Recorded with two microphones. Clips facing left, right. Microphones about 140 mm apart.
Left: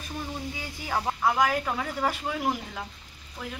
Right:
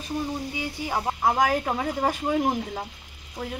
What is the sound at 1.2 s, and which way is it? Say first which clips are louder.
Speech: right 3 dB; 40° right (ahead or behind).